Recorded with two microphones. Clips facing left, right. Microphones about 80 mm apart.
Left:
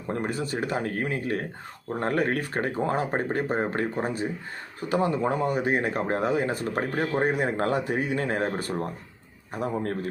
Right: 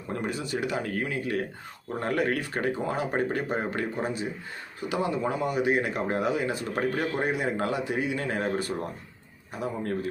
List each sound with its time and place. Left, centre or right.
0.1 s speech: left